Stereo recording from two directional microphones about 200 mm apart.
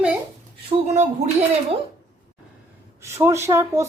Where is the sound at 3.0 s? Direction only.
15° right (ahead or behind).